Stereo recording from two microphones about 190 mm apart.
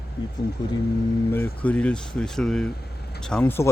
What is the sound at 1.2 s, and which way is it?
Speech, 10° left (ahead or behind).